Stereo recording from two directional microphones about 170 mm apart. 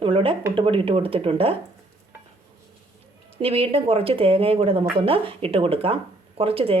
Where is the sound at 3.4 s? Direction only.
35° right (ahead or behind).